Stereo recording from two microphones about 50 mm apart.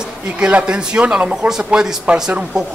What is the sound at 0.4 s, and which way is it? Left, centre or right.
Speech, right.